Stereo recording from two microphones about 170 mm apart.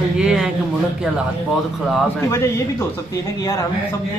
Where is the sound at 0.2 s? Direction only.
5° right (ahead or behind).